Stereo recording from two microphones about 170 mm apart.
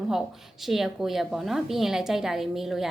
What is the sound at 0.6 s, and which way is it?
A woman's voice, centre (ahead or behind).